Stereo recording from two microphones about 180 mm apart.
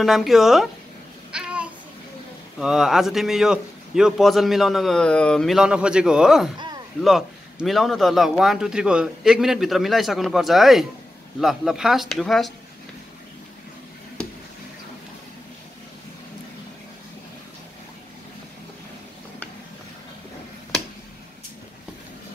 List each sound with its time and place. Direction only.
0.0 s a man's voice: centre (ahead or behind)
1.3 s babbling: 5° right (ahead or behind)
2.6 s a man's voice: 5° right (ahead or behind)